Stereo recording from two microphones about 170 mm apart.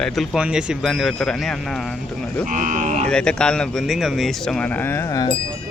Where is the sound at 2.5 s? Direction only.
50° right (ahead or behind).